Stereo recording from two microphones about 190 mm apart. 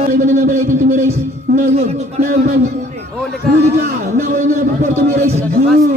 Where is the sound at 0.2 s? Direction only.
40° right (ahead or behind).